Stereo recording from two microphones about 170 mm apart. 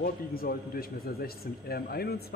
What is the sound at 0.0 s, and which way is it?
A man's voice, 60° left (ahead or behind).